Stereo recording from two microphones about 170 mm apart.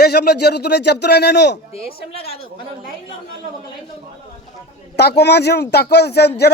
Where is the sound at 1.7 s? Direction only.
35° left (ahead or behind).